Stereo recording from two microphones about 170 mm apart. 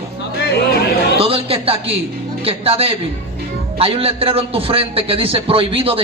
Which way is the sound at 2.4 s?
35° right (ahead or behind).